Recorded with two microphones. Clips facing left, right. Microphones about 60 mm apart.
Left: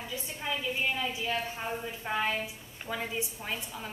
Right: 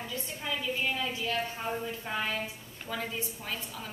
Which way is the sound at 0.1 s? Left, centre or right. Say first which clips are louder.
Left 2 dB; centre.